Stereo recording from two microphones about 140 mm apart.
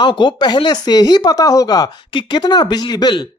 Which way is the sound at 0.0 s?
35° left (ahead or behind).